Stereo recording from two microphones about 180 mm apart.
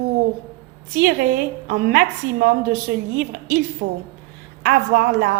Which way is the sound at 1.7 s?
60° right (ahead or behind).